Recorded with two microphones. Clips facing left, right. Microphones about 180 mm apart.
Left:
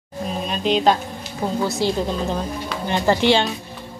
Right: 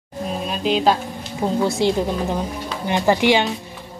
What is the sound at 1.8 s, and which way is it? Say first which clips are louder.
A woman's voice: right 2 dB; 20° right (ahead or behind).